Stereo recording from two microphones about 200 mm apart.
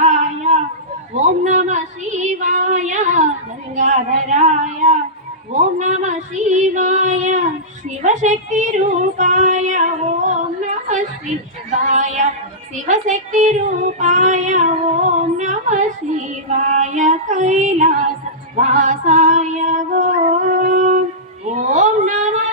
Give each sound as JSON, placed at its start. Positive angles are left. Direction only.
{"t": 0.0, "sound": "a sound", "side_deg": -35}
{"t": 3.8, "sound": "speech", "side_deg": -40}
{"t": 5.5, "sound": "female singing", "side_deg": -35}
{"t": 11.8, "sound": "female singing", "side_deg": -40}
{"t": 12.7, "sound": "speech", "side_deg": -40}
{"t": 16.5, "sound": "music", "side_deg": -35}
{"t": 18.5, "sound": "female singing", "side_deg": -40}
{"t": 21.7, "sound": "a sound", "side_deg": -40}